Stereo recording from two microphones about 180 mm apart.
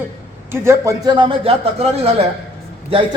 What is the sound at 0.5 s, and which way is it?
Speech, 15° right (ahead or behind).